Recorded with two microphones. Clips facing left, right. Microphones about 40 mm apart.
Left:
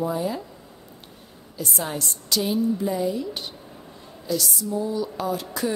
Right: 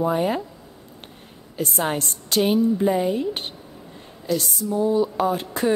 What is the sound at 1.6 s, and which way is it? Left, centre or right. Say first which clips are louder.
Speech: right 5 dB; right.